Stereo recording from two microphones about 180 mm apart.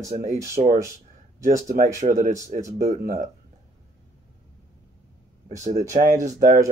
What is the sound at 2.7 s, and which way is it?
Speech, 50° right (ahead or behind).